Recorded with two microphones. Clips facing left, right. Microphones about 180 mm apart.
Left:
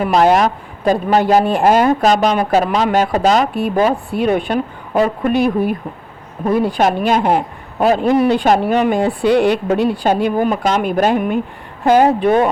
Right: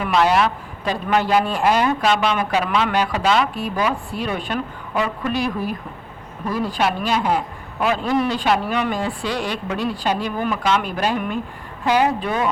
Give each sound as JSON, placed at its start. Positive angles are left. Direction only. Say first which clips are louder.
{"t": 0.0, "sound": "speech", "louder": "left 5 dB", "side_deg": 40}
{"t": 3.5, "sound": "speech", "louder": "left 7 dB", "side_deg": 60}
{"t": 4.9, "sound": "speech", "louder": "left 8 dB", "side_deg": 35}
{"t": 6.4, "sound": "speech", "louder": "left 7 dB", "side_deg": 60}